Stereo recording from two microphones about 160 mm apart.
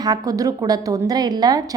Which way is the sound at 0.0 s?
25° right (ahead or behind).